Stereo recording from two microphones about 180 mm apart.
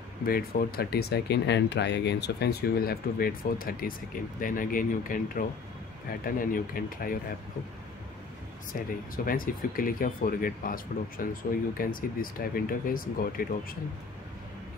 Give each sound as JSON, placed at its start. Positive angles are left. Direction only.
{"t": 0.2, "sound": "speech", "side_deg": 55}
{"t": 8.7, "sound": "speech", "side_deg": 50}